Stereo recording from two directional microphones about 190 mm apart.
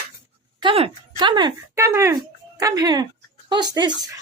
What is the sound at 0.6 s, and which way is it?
Speech, 30° right (ahead or behind).